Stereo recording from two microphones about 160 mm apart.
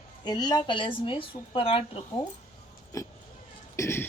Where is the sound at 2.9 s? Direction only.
20° left (ahead or behind).